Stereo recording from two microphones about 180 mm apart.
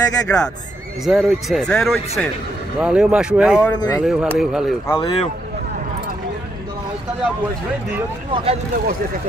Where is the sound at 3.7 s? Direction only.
20° left (ahead or behind).